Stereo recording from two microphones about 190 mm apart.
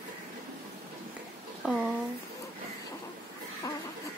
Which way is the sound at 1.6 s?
Centre (ahead or behind).